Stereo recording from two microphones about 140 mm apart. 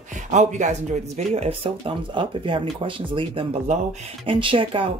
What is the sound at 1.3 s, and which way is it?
Speech, 40° right (ahead or behind).